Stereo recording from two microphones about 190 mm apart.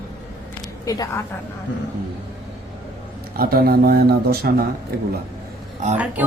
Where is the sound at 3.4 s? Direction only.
50° right (ahead or behind).